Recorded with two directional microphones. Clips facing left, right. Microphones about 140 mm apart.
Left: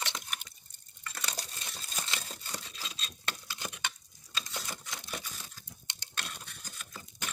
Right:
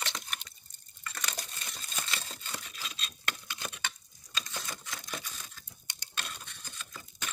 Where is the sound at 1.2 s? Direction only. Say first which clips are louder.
Even; 30° left (ahead or behind).